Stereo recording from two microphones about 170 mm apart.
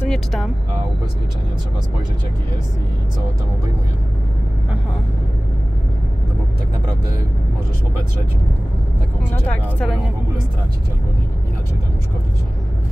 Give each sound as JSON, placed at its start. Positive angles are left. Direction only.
{"t": 0.0, "sound": "vehicle", "side_deg": 0}
{"t": 9.3, "sound": "speech", "side_deg": 5}